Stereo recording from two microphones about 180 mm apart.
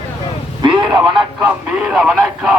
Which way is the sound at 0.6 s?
25° right (ahead or behind).